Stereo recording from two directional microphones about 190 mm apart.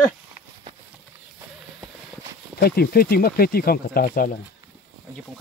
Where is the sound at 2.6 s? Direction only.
55° left (ahead or behind).